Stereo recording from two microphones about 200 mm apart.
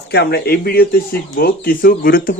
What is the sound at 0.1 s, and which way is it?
Speech, 55° left (ahead or behind).